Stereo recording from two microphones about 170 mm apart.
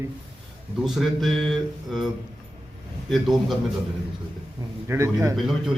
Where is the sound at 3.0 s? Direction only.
Centre (ahead or behind).